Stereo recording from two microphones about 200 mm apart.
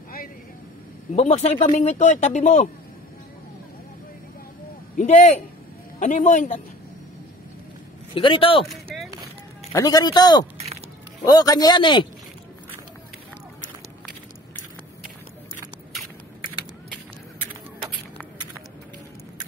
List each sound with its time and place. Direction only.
1.1 s speech: 35° left (ahead or behind)
4.9 s speech: 35° left (ahead or behind)
8.1 s a man's voice: 25° left (ahead or behind)
9.7 s a man's voice: 15° left (ahead or behind)